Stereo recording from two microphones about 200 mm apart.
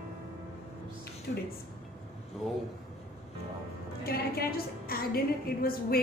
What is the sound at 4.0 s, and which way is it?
A woman's voice, 50° left (ahead or behind).